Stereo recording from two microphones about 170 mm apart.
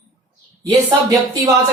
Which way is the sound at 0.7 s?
20° right (ahead or behind).